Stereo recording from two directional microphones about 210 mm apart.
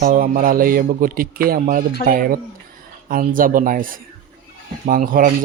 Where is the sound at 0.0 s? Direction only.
40° right (ahead or behind).